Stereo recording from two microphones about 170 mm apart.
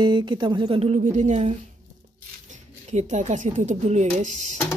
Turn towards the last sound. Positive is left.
turn(degrees=-45)  # may be behind; listen again after turning